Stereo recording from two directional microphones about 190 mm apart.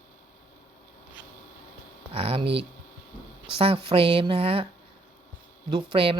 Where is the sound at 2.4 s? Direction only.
65° right (ahead or behind).